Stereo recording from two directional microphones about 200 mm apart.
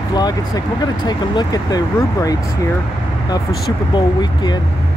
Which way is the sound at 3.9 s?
20° left (ahead or behind).